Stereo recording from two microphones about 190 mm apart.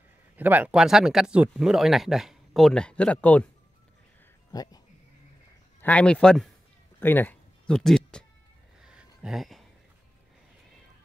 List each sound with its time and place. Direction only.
0.4 s speech: 10° right (ahead or behind); by 3.4 s 5° left (ahead or behind)
4.5 s speech: 20° left (ahead or behind)
5.8 s speech: 5° left (ahead or behind)
7.0 s music: 10° left (ahead or behind)
8.8 s a sound: 5° right (ahead or behind)